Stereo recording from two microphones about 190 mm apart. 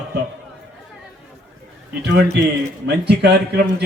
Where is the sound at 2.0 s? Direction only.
60° right (ahead or behind).